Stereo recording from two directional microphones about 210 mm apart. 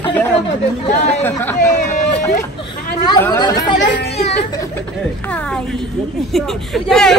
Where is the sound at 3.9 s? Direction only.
30° left (ahead or behind).